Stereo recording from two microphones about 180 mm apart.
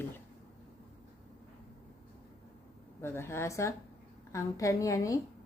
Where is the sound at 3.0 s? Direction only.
15° left (ahead or behind).